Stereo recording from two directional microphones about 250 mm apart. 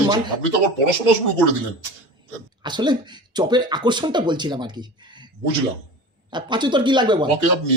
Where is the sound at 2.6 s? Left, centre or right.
Centre.